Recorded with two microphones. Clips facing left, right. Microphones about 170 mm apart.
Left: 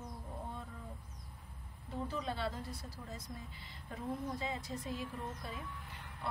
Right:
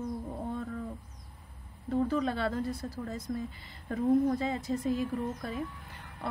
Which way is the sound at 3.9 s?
65° right (ahead or behind).